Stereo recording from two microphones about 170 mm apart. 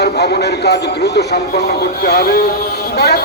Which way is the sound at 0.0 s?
70° left (ahead or behind).